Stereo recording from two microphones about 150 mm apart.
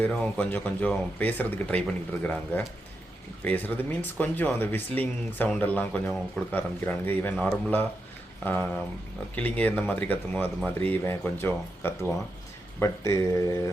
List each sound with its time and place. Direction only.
0.0 s speech: 10° left (ahead or behind)